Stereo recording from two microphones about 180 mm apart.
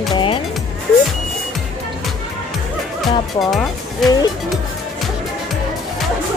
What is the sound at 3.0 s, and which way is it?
Music, centre (ahead or behind).